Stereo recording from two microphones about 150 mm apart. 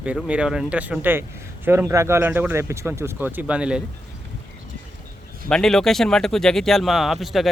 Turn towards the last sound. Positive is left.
turn(degrees=0)  # may be behind; listen again after turning